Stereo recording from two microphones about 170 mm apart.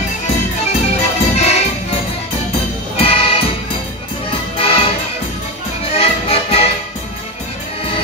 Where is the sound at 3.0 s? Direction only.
35° left (ahead or behind).